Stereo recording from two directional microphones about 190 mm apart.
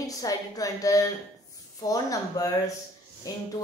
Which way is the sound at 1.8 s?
20° left (ahead or behind).